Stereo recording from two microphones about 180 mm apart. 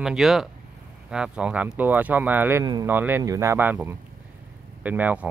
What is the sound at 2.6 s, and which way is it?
Speech, 20° right (ahead or behind).